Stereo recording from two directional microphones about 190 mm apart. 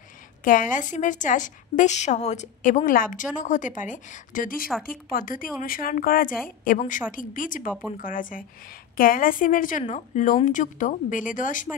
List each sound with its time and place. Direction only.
0.4 s a woman's voice: 45° left (ahead or behind)